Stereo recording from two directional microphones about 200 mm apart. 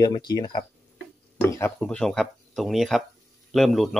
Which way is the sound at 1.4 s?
10° left (ahead or behind).